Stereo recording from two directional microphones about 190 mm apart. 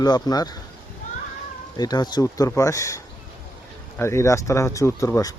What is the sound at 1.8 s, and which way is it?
Speech, 20° left (ahead or behind).